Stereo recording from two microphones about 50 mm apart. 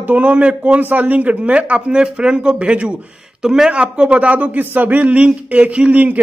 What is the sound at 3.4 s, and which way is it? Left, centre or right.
A man's voice, centre.